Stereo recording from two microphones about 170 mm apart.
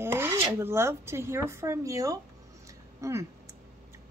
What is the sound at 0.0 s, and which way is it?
Speech, 15° right (ahead or behind).